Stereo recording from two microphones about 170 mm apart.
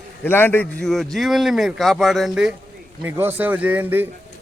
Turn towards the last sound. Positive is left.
turn(degrees=-10)  # may be behind; listen again after turning